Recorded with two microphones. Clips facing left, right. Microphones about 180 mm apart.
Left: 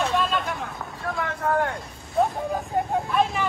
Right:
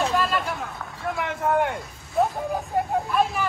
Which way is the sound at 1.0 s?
20° right (ahead or behind).